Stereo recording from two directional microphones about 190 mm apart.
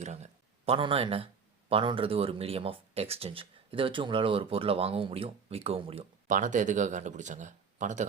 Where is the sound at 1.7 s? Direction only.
25° right (ahead or behind).